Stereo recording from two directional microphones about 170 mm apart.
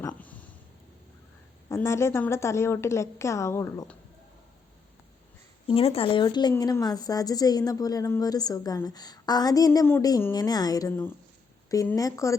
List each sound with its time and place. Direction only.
0.1 s a sound: 10° left (ahead or behind)
1.7 s a woman's voice: 15° left (ahead or behind)
5.6 s a woman's voice: 35° left (ahead or behind); by 12.4 s 20° left (ahead or behind)